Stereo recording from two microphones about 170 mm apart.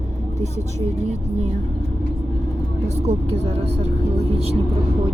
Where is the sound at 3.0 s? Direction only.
40° right (ahead or behind).